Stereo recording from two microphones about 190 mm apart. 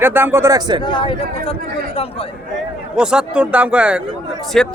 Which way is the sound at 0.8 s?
25° left (ahead or behind).